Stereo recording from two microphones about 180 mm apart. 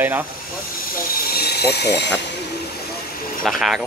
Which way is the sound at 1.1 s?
55° left (ahead or behind).